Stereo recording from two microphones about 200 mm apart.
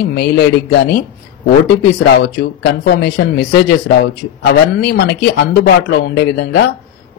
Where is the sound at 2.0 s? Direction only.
60° left (ahead or behind).